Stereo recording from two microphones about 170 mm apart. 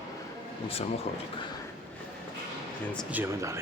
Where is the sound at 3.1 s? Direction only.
15° right (ahead or behind).